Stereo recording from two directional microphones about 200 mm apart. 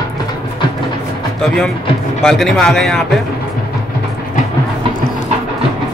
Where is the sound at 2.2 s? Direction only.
Centre (ahead or behind).